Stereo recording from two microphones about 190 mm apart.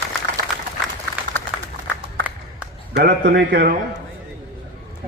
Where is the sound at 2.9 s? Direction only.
60° right (ahead or behind).